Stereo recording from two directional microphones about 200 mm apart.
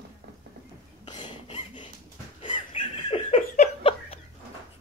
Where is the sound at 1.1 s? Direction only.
20° left (ahead or behind).